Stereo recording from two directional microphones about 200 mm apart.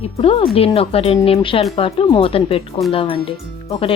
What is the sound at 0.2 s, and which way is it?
Speech, 30° left (ahead or behind).